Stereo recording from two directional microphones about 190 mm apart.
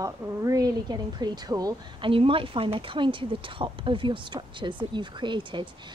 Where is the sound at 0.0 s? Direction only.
20° right (ahead or behind).